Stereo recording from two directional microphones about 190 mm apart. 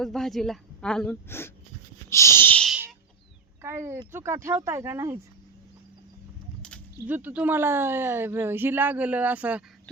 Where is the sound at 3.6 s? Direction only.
15° right (ahead or behind).